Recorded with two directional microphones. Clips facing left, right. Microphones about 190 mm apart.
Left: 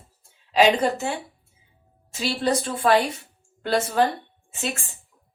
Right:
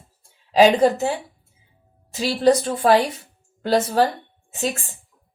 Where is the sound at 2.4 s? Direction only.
35° right (ahead or behind).